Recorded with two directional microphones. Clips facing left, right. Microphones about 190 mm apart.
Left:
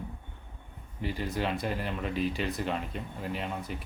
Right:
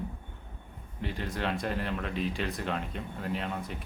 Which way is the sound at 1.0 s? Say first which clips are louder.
Left 2 dB; centre (ahead or behind).